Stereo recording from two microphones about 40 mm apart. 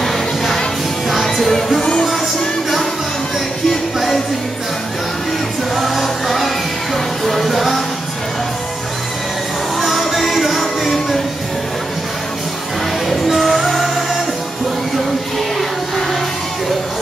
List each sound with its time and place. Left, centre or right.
0.0 s music: centre
1.8 s music: centre
3.6 s music: centre
5.8 s music: centre
9.8 s music: centre
13.3 s music: centre